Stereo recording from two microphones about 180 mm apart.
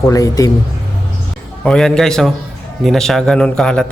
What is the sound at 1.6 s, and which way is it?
A man's voice, 5° left (ahead or behind).